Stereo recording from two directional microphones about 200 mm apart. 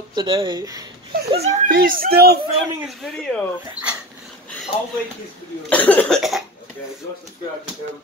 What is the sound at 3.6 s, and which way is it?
Speech, 5° right (ahead or behind).